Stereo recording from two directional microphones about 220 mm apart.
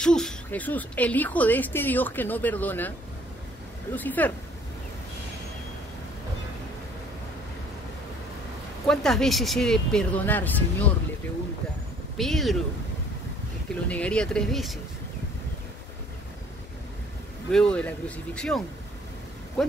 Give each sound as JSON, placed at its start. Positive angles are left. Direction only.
{"t": 0.0, "sound": "a woman's voice", "side_deg": 5}
{"t": 3.9, "sound": "a woman's voice", "side_deg": 10}
{"t": 8.8, "sound": "speech", "side_deg": 0}
{"t": 12.2, "sound": "speech", "side_deg": 0}
{"t": 13.8, "sound": "speech", "side_deg": 5}
{"t": 17.5, "sound": "speech", "side_deg": 5}